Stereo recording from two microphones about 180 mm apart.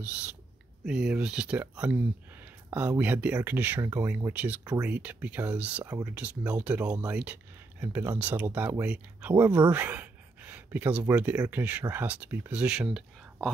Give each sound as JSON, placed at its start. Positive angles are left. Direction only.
{"t": 0.8, "sound": "speech", "side_deg": -5}